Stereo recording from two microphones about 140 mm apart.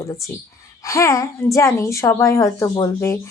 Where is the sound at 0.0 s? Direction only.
20° left (ahead or behind).